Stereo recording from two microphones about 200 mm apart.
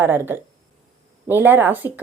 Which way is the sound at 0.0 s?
10° right (ahead or behind).